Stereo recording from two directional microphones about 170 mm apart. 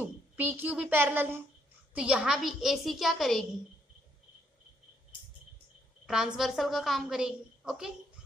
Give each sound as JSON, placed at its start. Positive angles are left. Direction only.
{"t": 0.0, "sound": "a woman's voice", "side_deg": -10}
{"t": 6.0, "sound": "a woman's voice", "side_deg": -5}